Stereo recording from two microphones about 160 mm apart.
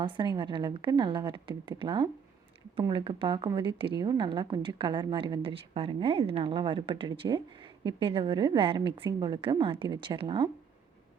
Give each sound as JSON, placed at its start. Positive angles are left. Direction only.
{"t": 0.0, "sound": "a woman's voice", "side_deg": -30}